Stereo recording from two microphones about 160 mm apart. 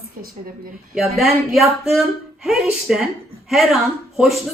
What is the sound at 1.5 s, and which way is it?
Speech, centre (ahead or behind).